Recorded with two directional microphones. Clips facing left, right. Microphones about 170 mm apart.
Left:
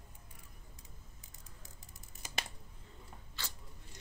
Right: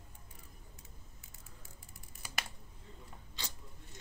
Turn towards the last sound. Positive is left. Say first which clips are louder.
# right 1 dB
turn(degrees=-15)  # may be behind; listen again after turning